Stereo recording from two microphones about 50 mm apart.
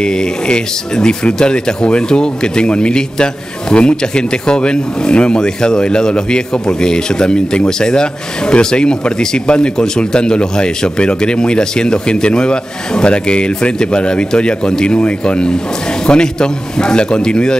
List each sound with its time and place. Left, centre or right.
0.0 s speech: centre